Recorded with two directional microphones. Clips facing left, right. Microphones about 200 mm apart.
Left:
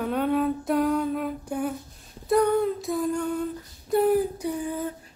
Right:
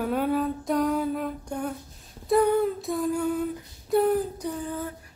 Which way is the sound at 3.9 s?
5° left (ahead or behind).